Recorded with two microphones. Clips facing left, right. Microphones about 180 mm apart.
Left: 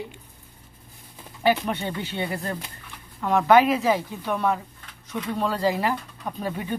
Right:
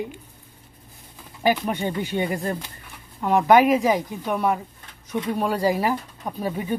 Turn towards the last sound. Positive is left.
turn(degrees=-10)  # may be behind; listen again after turning